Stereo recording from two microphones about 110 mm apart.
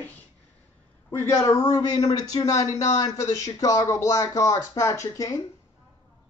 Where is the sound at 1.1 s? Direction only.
25° left (ahead or behind).